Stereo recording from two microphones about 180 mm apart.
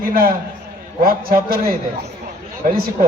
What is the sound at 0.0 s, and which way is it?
A man's voice, 55° right (ahead or behind).